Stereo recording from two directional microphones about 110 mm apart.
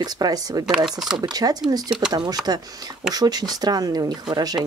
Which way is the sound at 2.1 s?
35° right (ahead or behind).